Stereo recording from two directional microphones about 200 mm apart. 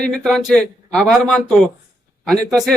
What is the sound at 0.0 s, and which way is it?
Speech, centre (ahead or behind).